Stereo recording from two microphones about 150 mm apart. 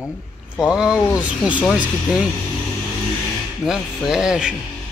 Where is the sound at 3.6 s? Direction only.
5° right (ahead or behind).